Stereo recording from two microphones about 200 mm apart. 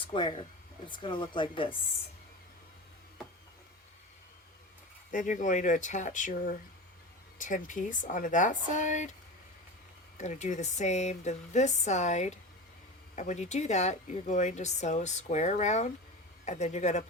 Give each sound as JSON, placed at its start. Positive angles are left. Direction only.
{"t": 0.1, "sound": "speech", "side_deg": 25}
{"t": 5.1, "sound": "speech", "side_deg": 40}
{"t": 10.2, "sound": "speech", "side_deg": 35}